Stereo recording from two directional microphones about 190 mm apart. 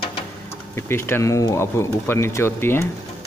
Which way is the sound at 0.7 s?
15° left (ahead or behind).